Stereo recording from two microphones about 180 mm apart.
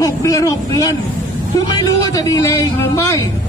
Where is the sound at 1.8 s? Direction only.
20° left (ahead or behind).